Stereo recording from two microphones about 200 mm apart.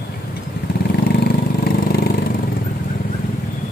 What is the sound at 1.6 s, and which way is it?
Vehicle, 50° left (ahead or behind).